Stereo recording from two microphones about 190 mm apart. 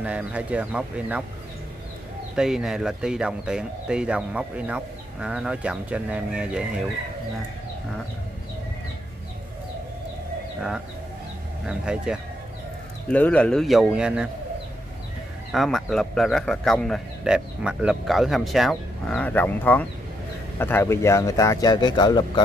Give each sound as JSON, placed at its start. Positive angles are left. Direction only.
{"t": 0.0, "sound": "speech", "side_deg": -5}
{"t": 2.3, "sound": "speech", "side_deg": -5}
{"t": 11.6, "sound": "speech", "side_deg": -5}
{"t": 13.1, "sound": "speech", "side_deg": 5}
{"t": 15.5, "sound": "speech", "side_deg": 0}